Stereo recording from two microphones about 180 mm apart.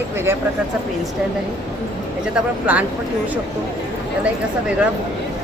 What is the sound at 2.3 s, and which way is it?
Speech, 5° right (ahead or behind).